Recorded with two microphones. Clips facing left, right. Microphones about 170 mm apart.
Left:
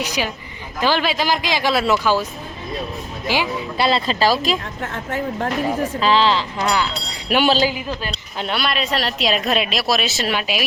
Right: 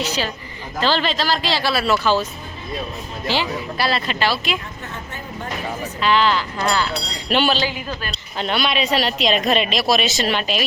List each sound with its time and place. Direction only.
0.0 s speech: 15° left (ahead or behind)
3.3 s speech: 10° left (ahead or behind)
3.8 s speech: 25° left (ahead or behind)
4.8 s speech: 90° left
6.0 s speech: 30° left (ahead or behind)
6.6 s speech: 15° left (ahead or behind)